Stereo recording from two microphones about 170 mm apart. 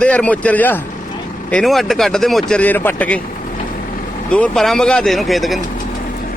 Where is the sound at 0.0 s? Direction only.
10° left (ahead or behind).